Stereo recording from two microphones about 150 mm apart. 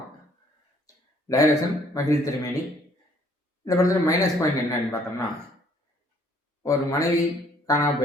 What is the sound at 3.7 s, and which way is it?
Speech, 20° left (ahead or behind).